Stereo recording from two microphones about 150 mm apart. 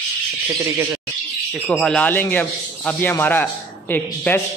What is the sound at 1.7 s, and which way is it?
A man's voice, 5° left (ahead or behind).